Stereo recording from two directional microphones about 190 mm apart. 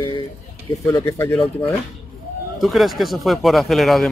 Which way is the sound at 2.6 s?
Centre (ahead or behind).